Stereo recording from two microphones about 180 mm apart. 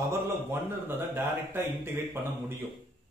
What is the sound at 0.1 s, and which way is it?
Speech, 10° right (ahead or behind).